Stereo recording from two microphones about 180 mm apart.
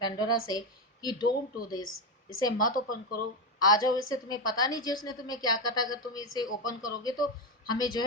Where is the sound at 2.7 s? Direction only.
50° left (ahead or behind).